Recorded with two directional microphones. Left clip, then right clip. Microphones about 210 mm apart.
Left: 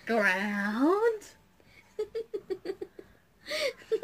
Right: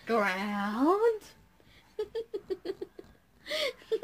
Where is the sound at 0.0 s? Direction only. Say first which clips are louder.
Left 2 dB; 10° right (ahead or behind).